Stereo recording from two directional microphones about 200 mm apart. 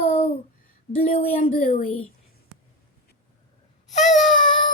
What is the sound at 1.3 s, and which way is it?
Child singing, 45° left (ahead or behind).